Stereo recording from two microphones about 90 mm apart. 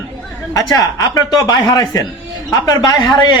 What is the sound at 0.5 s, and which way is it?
A man's voice, 45° left (ahead or behind).